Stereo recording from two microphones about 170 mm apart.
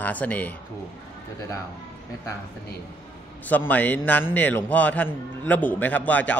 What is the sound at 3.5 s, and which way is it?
A man's voice, 10° left (ahead or behind).